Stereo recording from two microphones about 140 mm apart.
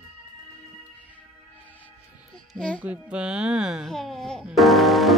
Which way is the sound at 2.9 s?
10° right (ahead or behind).